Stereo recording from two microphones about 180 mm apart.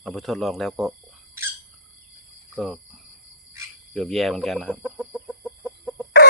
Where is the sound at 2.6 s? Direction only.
Centre (ahead or behind).